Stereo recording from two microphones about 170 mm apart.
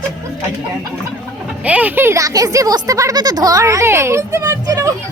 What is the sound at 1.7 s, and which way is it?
Speech, 10° right (ahead or behind).